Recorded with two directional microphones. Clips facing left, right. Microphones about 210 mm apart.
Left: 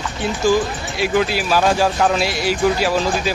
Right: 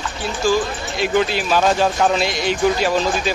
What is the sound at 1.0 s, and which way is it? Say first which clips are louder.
Speech: even; 5° left (ahead or behind).